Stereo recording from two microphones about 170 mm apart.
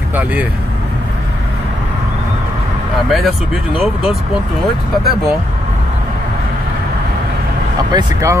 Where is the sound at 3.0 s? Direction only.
Centre (ahead or behind).